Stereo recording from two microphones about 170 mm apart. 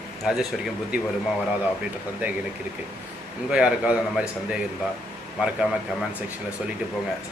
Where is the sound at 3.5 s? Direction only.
5° right (ahead or behind).